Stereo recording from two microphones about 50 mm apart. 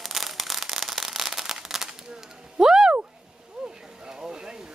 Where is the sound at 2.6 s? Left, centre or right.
Centre.